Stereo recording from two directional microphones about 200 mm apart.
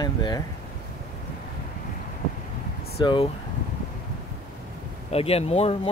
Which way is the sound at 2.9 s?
25° left (ahead or behind).